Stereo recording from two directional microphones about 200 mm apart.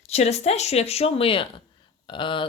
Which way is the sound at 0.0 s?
35° left (ahead or behind).